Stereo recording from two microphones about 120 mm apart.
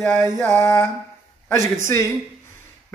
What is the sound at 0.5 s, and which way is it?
Mantra, 20° left (ahead or behind).